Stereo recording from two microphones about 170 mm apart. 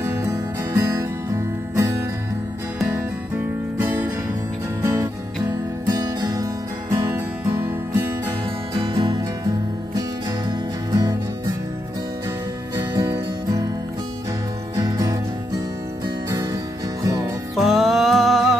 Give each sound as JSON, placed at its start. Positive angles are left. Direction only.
{"t": 0.0, "sound": "music", "side_deg": -15}
{"t": 3.8, "sound": "music", "side_deg": -15}
{"t": 8.7, "sound": "music", "side_deg": -30}
{"t": 10.5, "sound": "music", "side_deg": -20}
{"t": 12.7, "sound": "music", "side_deg": -20}
{"t": 14.8, "sound": "music", "side_deg": -20}
{"t": 17.6, "sound": "music", "side_deg": 0}